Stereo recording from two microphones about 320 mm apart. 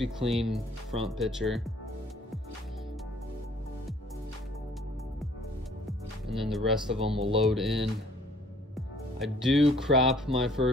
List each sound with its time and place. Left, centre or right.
0.0 s speech: centre
5.9 s music: centre
7.0 s speech: centre
7.4 s speech: centre
8.7 s music: centre
9.8 s speech: centre